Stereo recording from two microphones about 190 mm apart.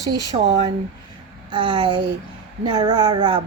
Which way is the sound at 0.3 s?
35° right (ahead or behind).